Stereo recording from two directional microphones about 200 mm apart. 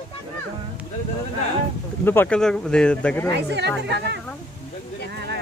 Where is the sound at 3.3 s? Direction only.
60° right (ahead or behind).